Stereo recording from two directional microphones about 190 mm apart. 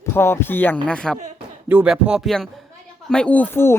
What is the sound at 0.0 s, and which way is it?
Speech, 15° left (ahead or behind).